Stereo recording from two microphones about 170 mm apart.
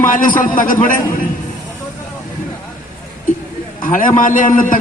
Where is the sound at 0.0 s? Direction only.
50° left (ahead or behind).